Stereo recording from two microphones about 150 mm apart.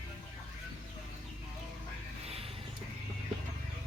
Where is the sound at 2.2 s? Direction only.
40° right (ahead or behind).